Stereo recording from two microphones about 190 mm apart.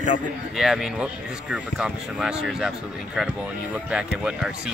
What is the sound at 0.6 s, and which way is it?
Speech, centre (ahead or behind).